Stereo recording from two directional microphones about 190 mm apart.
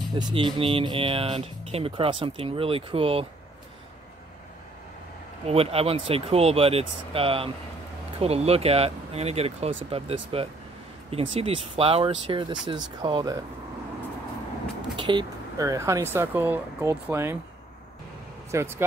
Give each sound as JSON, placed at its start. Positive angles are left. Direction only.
{"t": 0.2, "sound": "speech", "side_deg": -25}
{"t": 5.4, "sound": "speech", "side_deg": -30}
{"t": 15.0, "sound": "speech", "side_deg": -25}
{"t": 18.5, "sound": "speech", "side_deg": -15}